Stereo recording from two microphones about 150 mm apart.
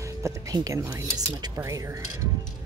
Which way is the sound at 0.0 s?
20° right (ahead or behind).